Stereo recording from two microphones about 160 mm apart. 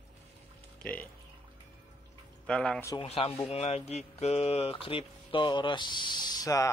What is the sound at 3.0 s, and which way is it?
Speech, 40° left (ahead or behind).